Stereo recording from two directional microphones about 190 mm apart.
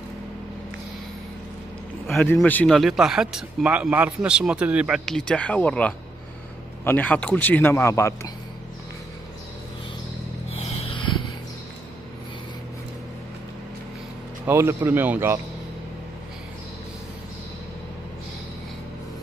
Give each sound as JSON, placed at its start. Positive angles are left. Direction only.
{"t": 2.3, "sound": "a man's voice", "side_deg": 5}
{"t": 10.6, "sound": "a sound", "side_deg": 30}
{"t": 14.4, "sound": "speech", "side_deg": -15}